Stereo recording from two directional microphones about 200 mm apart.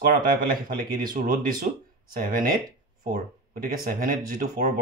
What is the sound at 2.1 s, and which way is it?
Speech, 45° right (ahead or behind).